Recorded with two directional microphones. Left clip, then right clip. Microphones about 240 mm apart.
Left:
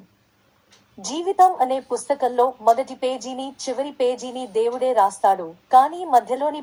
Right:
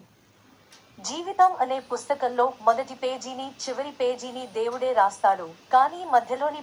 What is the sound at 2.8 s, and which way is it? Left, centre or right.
A woman's voice, left.